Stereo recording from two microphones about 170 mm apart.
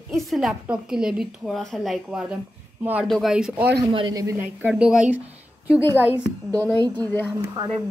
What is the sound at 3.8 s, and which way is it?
Speech, 25° right (ahead or behind).